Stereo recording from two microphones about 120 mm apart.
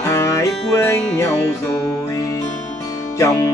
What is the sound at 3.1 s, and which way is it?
Music, 25° left (ahead or behind).